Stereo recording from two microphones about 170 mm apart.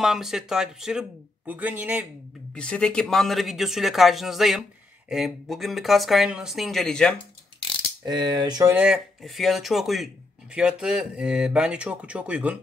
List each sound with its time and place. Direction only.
0.0 s speech: centre (ahead or behind)
2.5 s speech: 5° left (ahead or behind)
8.0 s speech: 25° right (ahead or behind)
8.7 s speech: 5° right (ahead or behind)